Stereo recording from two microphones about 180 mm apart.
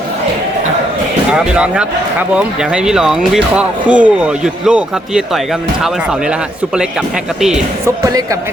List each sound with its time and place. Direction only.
1.3 s speech: 5° right (ahead or behind)
7.9 s speech: 20° right (ahead or behind)